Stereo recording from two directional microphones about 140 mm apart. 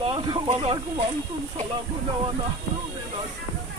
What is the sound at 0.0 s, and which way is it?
Speech, 40° right (ahead or behind).